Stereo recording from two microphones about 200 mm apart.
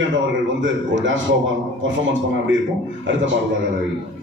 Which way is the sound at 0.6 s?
70° right (ahead or behind).